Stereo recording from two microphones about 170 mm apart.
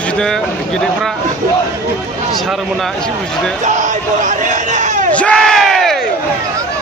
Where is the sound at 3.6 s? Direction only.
45° right (ahead or behind).